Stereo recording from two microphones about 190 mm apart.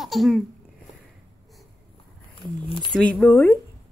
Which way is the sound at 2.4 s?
25° left (ahead or behind).